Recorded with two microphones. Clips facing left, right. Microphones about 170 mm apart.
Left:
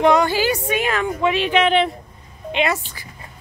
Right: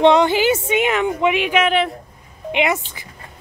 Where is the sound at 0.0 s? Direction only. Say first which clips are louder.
Right 3 dB; 20° right (ahead or behind); by 1.9 s 5° right (ahead or behind).